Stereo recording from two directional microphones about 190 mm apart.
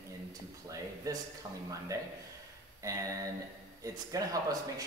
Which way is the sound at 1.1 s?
20° right (ahead or behind).